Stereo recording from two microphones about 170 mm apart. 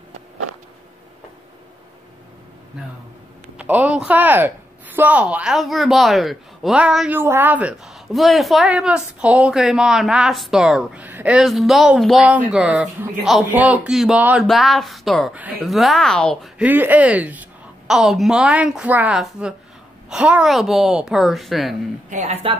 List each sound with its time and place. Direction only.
3.5 s speech: 10° right (ahead or behind)
16.5 s speech: 10° right (ahead or behind)
22.1 s speech: 40° right (ahead or behind)